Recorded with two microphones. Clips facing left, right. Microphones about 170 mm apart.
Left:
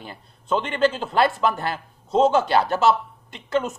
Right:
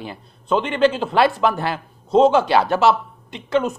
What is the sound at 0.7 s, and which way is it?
Speech, 45° left (ahead or behind).